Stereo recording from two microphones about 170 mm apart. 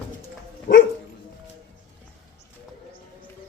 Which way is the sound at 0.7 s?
80° left.